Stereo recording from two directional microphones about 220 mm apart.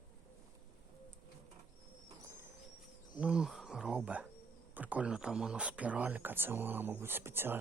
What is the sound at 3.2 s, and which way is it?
Speech, 5° right (ahead or behind).